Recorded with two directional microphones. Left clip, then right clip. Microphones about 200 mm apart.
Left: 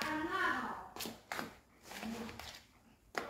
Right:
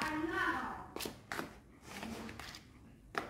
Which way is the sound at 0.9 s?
10° right (ahead or behind).